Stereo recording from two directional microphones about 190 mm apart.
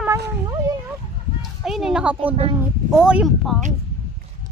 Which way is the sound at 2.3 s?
30° right (ahead or behind).